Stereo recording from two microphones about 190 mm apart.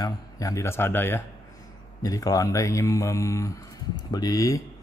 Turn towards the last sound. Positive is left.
turn(degrees=20)  # may be behind; listen again after turning